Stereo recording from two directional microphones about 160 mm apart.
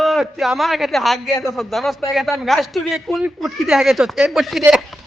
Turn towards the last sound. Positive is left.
turn(degrees=-5)  # may be behind; listen again after turning